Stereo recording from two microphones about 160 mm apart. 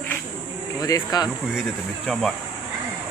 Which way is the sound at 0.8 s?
25° left (ahead or behind).